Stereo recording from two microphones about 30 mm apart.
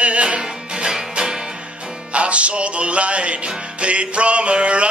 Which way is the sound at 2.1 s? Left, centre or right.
Right.